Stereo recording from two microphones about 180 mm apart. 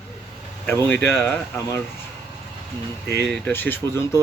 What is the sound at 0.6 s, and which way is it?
Speech, 10° left (ahead or behind).